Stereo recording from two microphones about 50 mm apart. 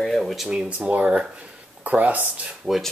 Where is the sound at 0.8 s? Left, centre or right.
Right.